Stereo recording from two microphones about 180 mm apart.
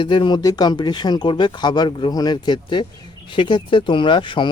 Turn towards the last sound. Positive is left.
turn(degrees=25)  # may be behind; listen again after turning